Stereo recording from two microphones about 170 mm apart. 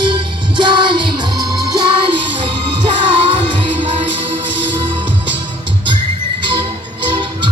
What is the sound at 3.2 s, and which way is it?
Music, 30° right (ahead or behind).